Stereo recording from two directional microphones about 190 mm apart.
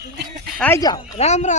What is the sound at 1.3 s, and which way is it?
Speech, 35° left (ahead or behind).